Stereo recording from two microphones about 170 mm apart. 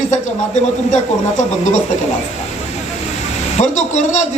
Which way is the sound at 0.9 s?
45° left (ahead or behind).